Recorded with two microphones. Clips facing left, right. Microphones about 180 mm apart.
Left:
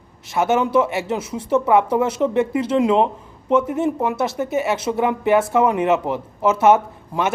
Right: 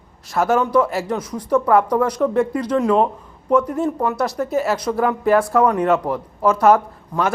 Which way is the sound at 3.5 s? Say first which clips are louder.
Even; 5° left (ahead or behind).